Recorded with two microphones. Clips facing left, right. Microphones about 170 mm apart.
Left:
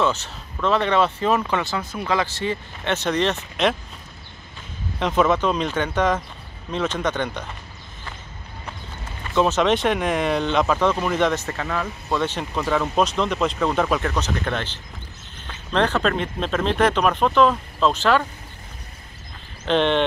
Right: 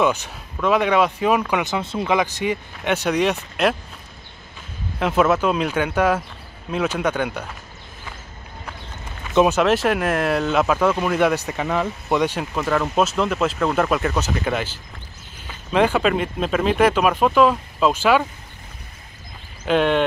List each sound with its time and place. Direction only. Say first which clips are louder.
0.0 s speech: right 2 dB; 15° right (ahead or behind)
4.9 s speech: right 1 dB; 5° right (ahead or behind)
9.3 s speech: right 3 dB; 15° right (ahead or behind)
9.6 s speech: right 1 dB; 5° right (ahead or behind)
19.6 s speech: right 1 dB; 5° right (ahead or behind)